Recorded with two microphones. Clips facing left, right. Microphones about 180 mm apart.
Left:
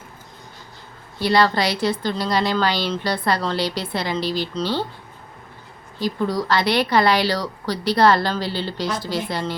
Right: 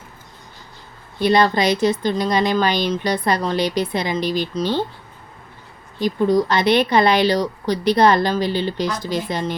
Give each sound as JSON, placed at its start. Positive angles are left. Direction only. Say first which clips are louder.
{"t": 1.2, "sound": "a woman's voice", "louder": "right 2 dB", "side_deg": -20}
{"t": 6.0, "sound": "speech", "louder": "right 5 dB", "side_deg": -20}